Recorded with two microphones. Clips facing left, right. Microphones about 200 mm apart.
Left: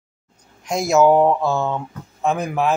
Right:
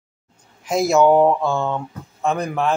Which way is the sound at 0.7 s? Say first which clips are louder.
Even; centre (ahead or behind).